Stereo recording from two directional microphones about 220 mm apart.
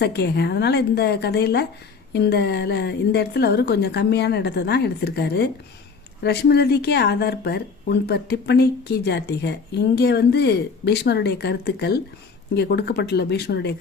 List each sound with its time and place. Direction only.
0.0 s speech: 50° left (ahead or behind)